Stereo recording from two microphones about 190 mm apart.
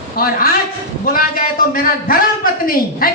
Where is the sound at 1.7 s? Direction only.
50° left (ahead or behind).